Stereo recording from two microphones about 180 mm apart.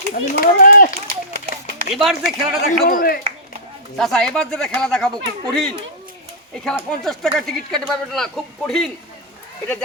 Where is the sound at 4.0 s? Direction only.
Centre (ahead or behind).